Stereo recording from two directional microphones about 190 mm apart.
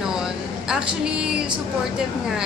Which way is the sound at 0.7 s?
5° right (ahead or behind).